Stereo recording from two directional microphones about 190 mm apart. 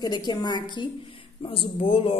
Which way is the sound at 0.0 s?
20° left (ahead or behind).